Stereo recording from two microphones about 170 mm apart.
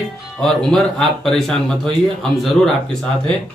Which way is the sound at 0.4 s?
5° left (ahead or behind).